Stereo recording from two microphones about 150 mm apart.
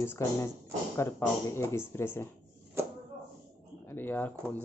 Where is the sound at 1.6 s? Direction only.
20° left (ahead or behind).